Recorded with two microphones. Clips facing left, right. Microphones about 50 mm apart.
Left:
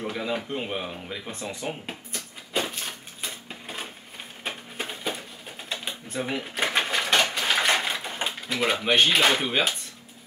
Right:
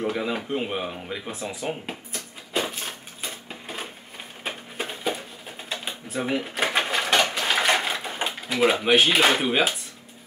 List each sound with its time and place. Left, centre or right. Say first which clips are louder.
0.0 s a sound: right 3 dB; centre
4.5 s bird: right 2 dB; centre
5.7 s cash register: right 1 dB; centre